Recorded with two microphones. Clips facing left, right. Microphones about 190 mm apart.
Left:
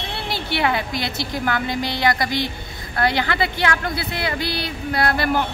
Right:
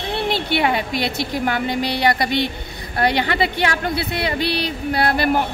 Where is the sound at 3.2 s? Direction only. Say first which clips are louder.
Right 2 dB; 25° right (ahead or behind).